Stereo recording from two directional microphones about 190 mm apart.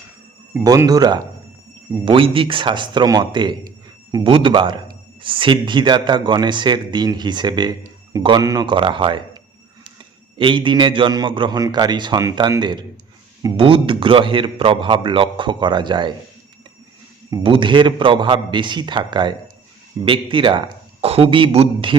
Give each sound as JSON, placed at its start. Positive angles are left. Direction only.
{"t": 0.5, "sound": "speech", "side_deg": -15}
{"t": 17.3, "sound": "speech", "side_deg": -25}